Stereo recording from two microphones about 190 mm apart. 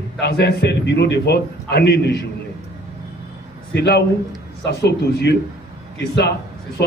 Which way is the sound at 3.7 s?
60° left (ahead or behind).